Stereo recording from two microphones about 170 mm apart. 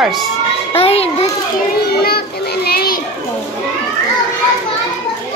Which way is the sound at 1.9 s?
65° left (ahead or behind).